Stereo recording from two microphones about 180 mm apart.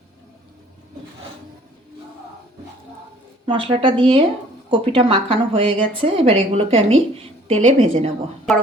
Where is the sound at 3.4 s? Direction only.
30° right (ahead or behind).